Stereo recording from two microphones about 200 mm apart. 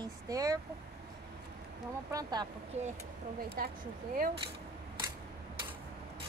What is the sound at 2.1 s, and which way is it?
Speech, 20° right (ahead or behind).